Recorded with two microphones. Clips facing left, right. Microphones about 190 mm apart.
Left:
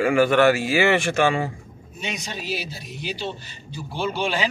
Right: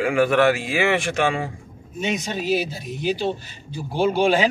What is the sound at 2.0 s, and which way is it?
A man's voice, 50° right (ahead or behind).